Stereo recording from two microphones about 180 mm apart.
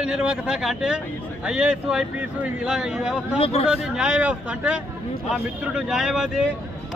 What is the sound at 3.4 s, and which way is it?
Speech, 35° left (ahead or behind).